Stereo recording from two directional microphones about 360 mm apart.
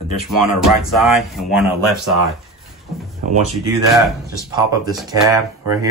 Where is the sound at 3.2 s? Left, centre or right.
Right.